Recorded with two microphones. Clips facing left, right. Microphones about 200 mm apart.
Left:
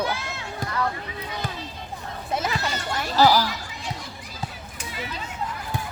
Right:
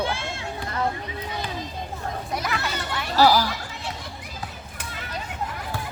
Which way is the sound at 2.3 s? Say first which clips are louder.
Left 3 dB; 25° left (ahead or behind).